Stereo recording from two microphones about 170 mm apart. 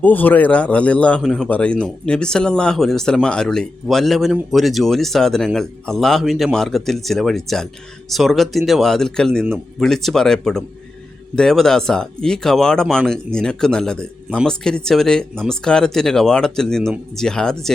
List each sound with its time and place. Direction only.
0.0 s speech: 10° left (ahead or behind)